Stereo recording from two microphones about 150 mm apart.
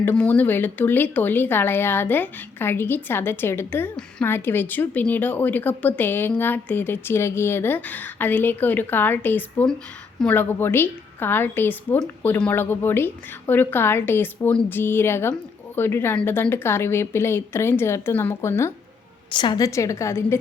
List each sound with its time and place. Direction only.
0.0 s speech: 10° left (ahead or behind)
19.3 s a woman's voice: 30° left (ahead or behind)